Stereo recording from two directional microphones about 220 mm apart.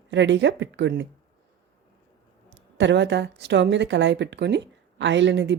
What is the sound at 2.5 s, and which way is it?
Speech, 55° right (ahead or behind).